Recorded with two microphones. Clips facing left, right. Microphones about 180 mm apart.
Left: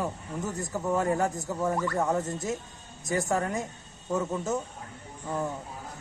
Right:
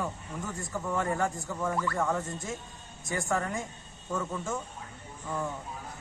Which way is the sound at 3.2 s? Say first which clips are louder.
Left 3 dB; 20° left (ahead or behind).